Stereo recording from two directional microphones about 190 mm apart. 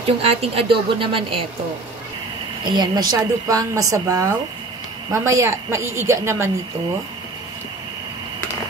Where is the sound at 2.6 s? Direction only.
25° right (ahead or behind).